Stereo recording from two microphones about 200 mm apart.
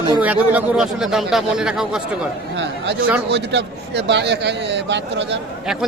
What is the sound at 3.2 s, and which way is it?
A man's voice, 60° right (ahead or behind).